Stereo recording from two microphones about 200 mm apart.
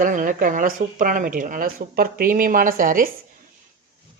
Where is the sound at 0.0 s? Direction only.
40° right (ahead or behind).